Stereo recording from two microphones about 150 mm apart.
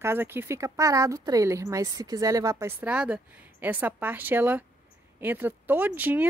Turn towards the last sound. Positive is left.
turn(degrees=-10)  # may be behind; listen again after turning